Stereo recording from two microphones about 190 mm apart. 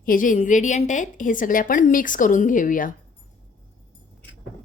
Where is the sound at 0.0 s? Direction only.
45° left (ahead or behind).